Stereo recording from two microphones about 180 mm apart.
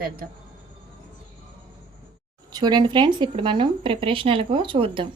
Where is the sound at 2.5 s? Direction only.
20° right (ahead or behind).